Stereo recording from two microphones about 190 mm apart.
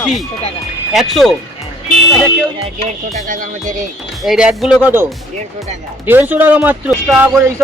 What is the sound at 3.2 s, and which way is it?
Speech, 45° right (ahead or behind).